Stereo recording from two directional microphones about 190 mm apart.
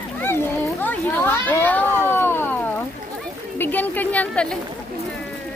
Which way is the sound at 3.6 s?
10° left (ahead or behind).